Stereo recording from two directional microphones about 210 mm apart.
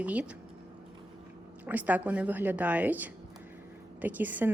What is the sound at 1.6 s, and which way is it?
A woman's voice, 10° right (ahead or behind).